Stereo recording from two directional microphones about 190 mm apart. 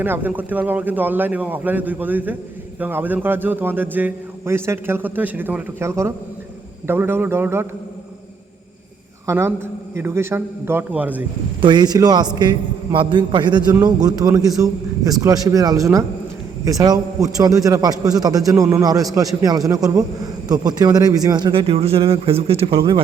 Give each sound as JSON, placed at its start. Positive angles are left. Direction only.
{"t": 0.0, "sound": "a man's voice", "side_deg": -10}
{"t": 9.2, "sound": "a woman's voice", "side_deg": -15}
{"t": 11.6, "sound": "a man's voice", "side_deg": -20}